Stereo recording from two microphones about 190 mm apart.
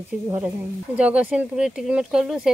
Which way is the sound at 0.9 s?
5° right (ahead or behind).